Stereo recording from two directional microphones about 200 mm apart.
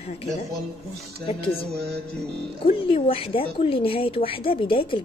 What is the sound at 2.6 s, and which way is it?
Speech, 25° left (ahead or behind).